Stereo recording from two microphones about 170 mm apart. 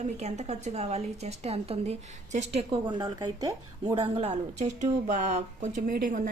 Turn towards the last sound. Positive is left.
turn(degrees=-50)  # may be behind; listen again after turning